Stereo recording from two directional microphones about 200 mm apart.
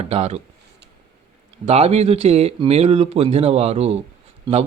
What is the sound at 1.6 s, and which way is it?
A man's voice, 30° right (ahead or behind).